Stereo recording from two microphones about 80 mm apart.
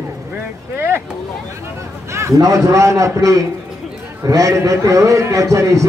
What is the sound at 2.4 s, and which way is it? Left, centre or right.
A man's voice, right.